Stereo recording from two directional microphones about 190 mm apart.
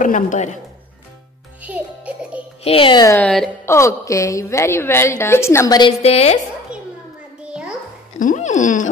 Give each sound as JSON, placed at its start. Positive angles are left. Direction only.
{"t": 0.0, "sound": "speech", "side_deg": 40}
{"t": 1.6, "sound": "music", "side_deg": -10}
{"t": 2.6, "sound": "speech", "side_deg": 30}
{"t": 3.2, "sound": "a woman's voice", "side_deg": 5}
{"t": 8.2, "sound": "speech", "side_deg": 40}